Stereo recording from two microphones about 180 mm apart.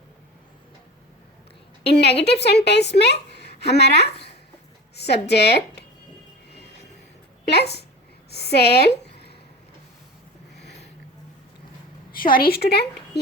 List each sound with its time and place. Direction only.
1.8 s a woman's voice: 65° left (ahead or behind)
4.9 s a sound: 65° left (ahead or behind)
5.3 s a woman's voice: 65° left (ahead or behind)
7.4 s a woman's voice: 65° left (ahead or behind)
10.6 s a sound: 65° left (ahead or behind)
12.1 s a woman's voice: 55° left (ahead or behind)